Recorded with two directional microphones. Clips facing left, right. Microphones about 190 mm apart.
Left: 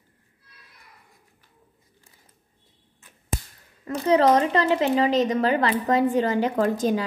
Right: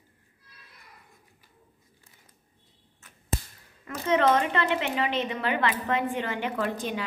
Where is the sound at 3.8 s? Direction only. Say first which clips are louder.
Left 5 dB; 35° left (ahead or behind).